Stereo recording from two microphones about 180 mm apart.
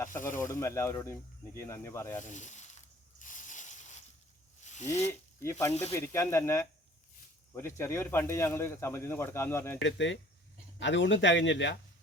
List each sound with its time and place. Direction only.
0.3 s speech: 15° left (ahead or behind)
2.3 s a sound: 40° left (ahead or behind)
4.6 s snake: 40° left (ahead or behind)
5.0 s speech: 15° left (ahead or behind)
9.8 s speech: 90° left